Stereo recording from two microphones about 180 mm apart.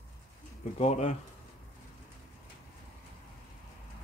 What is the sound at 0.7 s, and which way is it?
Speech, 35° left (ahead or behind).